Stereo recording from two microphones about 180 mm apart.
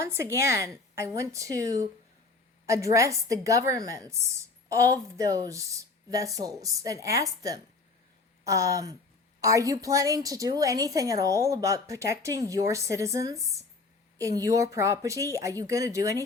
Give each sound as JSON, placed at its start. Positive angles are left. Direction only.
{"t": 0.0, "sound": "a woman's voice", "side_deg": -15}